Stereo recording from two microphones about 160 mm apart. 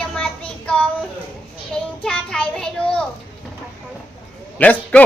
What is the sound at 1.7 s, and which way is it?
A child's voice, 5° left (ahead or behind).